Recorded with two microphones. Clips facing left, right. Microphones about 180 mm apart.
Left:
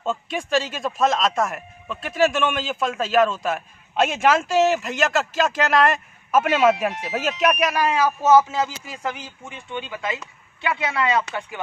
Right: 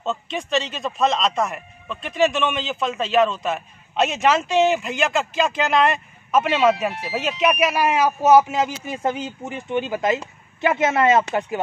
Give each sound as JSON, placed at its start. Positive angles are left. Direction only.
{"t": 0.0, "sound": "speech", "side_deg": 10}